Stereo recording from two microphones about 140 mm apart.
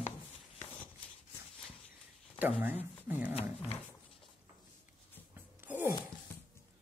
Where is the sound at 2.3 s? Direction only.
15° right (ahead or behind).